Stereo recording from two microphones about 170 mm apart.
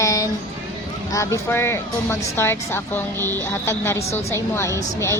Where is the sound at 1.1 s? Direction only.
15° left (ahead or behind).